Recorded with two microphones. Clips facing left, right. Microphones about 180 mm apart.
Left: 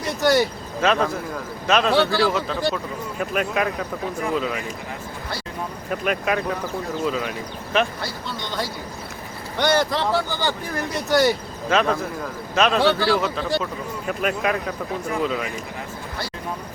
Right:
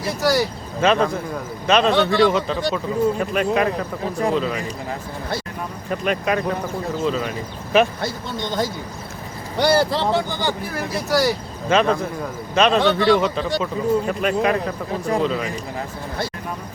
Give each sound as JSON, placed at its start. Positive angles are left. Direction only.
{"t": 0.0, "sound": "speech", "side_deg": 0}
{"t": 5.9, "sound": "speech", "side_deg": 5}
{"t": 8.0, "sound": "speech", "side_deg": -20}
{"t": 9.6, "sound": "speech", "side_deg": -30}
{"t": 10.2, "sound": "speech", "side_deg": -15}
{"t": 10.8, "sound": "speech", "side_deg": 0}